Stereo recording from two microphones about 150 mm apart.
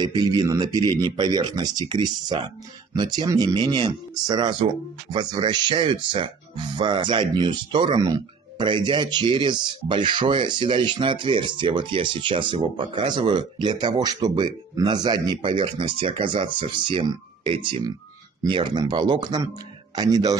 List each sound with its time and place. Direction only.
0.0 s speech: 25° right (ahead or behind)